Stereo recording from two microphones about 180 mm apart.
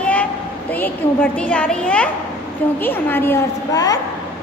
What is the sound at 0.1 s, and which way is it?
A child's voice, 10° left (ahead or behind).